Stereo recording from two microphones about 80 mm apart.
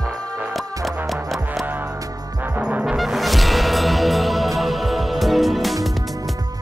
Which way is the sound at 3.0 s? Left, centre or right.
Centre.